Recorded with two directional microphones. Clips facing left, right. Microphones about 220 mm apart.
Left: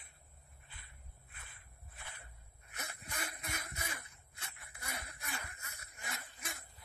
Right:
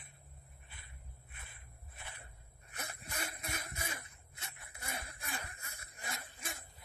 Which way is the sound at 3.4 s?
25° right (ahead or behind).